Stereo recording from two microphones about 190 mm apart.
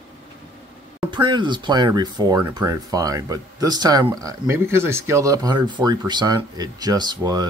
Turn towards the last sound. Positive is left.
turn(degrees=-20)  # may be behind; listen again after turning